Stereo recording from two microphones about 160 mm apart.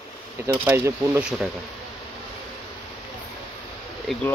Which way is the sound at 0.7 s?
10° right (ahead or behind).